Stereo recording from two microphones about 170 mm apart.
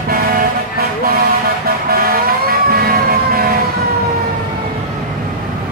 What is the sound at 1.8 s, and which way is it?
Vehicle, 60° right (ahead or behind).